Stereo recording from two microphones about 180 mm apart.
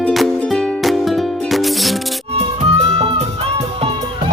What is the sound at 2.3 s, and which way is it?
Music, 35° right (ahead or behind).